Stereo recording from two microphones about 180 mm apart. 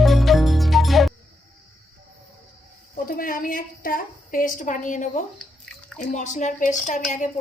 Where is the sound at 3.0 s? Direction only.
50° left (ahead or behind).